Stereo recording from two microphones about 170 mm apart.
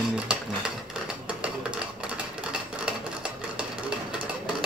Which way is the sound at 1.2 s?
5° right (ahead or behind).